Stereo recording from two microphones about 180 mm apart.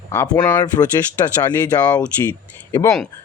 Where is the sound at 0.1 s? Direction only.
10° left (ahead or behind).